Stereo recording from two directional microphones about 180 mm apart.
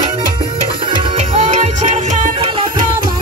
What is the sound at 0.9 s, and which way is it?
Music, 40° right (ahead or behind).